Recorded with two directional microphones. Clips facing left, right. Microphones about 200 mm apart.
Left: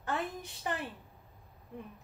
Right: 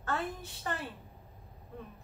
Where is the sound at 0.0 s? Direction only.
15° left (ahead or behind).